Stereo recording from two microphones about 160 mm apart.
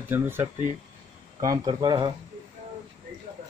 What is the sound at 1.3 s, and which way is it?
Speech, 25° right (ahead or behind).